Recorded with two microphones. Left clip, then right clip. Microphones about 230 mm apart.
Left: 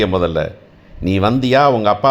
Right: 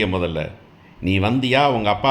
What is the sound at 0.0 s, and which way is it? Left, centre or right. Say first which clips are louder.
A man's voice: left 6 dB; centre.